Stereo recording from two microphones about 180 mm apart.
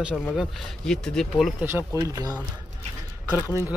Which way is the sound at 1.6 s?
15° right (ahead or behind).